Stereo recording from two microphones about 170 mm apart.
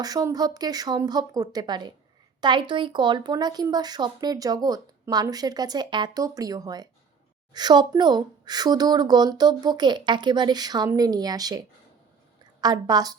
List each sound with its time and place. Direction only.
0.0 s speech: 20° right (ahead or behind)
12.6 s speech: 25° right (ahead or behind)